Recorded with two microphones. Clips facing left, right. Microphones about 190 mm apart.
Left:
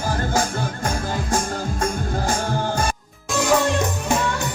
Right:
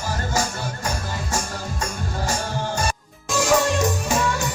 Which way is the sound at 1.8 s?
55° left (ahead or behind).